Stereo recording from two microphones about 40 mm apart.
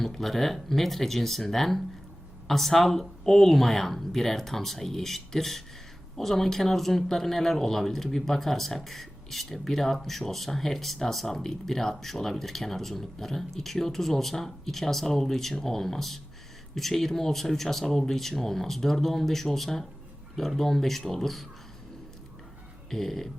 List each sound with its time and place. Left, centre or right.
0.0 s speech: centre
22.9 s speech: centre